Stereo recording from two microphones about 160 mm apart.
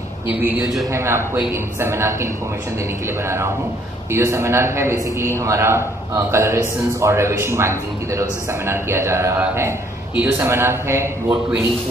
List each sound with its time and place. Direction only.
0.3 s a man's voice: 10° right (ahead or behind)
4.1 s a man's voice: 15° right (ahead or behind)